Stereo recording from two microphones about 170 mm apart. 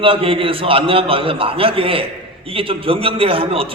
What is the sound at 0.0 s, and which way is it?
A man's voice, 30° right (ahead or behind).